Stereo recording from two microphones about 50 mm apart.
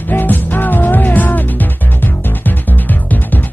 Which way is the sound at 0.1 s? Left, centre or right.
Left.